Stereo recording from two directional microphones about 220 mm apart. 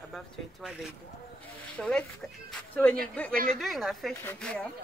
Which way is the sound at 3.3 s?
40° right (ahead or behind).